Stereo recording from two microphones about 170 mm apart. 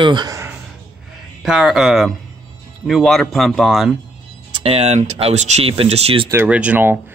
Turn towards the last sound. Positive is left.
turn(degrees=-10)  # may be behind; listen again after turning